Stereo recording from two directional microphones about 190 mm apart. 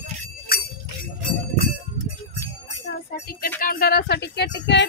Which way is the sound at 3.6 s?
50° left (ahead or behind).